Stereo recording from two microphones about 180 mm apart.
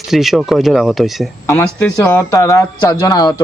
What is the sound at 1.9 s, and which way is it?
A man's voice, 15° left (ahead or behind).